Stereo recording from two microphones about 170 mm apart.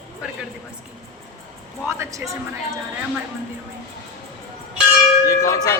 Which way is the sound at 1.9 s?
15° right (ahead or behind).